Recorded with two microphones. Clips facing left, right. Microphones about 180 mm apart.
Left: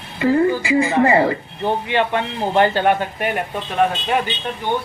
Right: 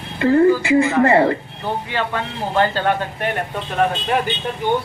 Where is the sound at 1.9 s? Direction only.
20° left (ahead or behind).